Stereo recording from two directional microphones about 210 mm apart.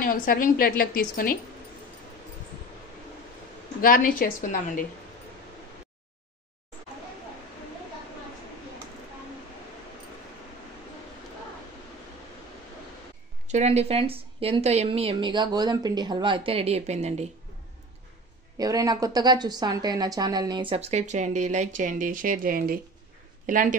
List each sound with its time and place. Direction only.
0.0 s a woman's voice: 45° left (ahead or behind)
3.8 s a woman's voice: 40° left (ahead or behind)
13.5 s a woman's voice: 30° right (ahead or behind)
18.6 s a woman's voice: 15° right (ahead or behind); by 23.7 s 40° right (ahead or behind)